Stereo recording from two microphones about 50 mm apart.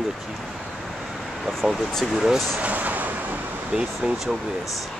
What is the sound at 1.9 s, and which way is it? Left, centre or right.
Speech, centre.